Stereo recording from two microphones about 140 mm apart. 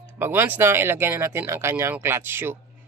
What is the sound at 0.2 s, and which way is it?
Speech, 15° right (ahead or behind).